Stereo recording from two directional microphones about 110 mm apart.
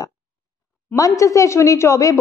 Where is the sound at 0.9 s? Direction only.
30° left (ahead or behind).